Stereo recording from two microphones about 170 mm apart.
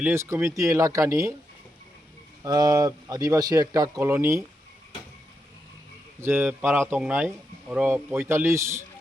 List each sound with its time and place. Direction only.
0.0 s speech: 15° right (ahead or behind)
2.4 s speech: 20° right (ahead or behind)
6.1 s speech: 15° right (ahead or behind)